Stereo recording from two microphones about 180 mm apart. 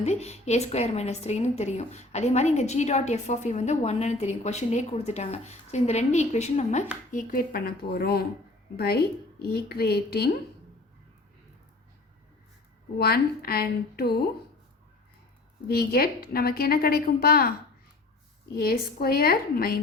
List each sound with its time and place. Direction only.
0.0 s a woman's voice: 35° left (ahead or behind); by 10.2 s 60° left (ahead or behind)
13.0 s a woman's voice: 60° left (ahead or behind)
15.6 s a woman's voice: 60° left (ahead or behind)
18.5 s a woman's voice: 55° left (ahead or behind)